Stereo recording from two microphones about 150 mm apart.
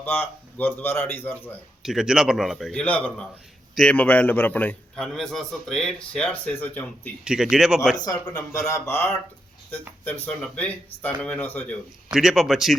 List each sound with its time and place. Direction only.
0.0 s a man's voice: 10° left (ahead or behind)
1.8 s a man's voice: 5° right (ahead or behind)
2.8 s a man's voice: 10° left (ahead or behind)
7.5 s a man's voice: 5° right (ahead or behind)
7.9 s a man's voice: 25° left (ahead or behind)
12.1 s a man's voice: 5° right (ahead or behind)